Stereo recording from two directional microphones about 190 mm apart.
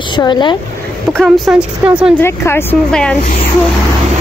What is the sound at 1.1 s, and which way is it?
Speech, centre (ahead or behind).